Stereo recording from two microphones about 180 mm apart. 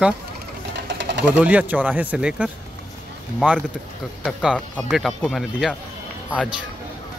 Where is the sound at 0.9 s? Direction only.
75° right (ahead or behind).